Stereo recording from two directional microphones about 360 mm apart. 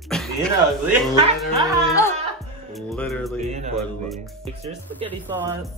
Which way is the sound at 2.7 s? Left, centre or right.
Centre.